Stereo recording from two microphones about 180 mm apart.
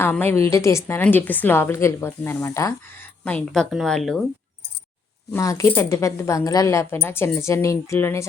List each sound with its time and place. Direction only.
0.0 s a woman's voice: 10° left (ahead or behind)
5.3 s a woman's voice: 15° left (ahead or behind)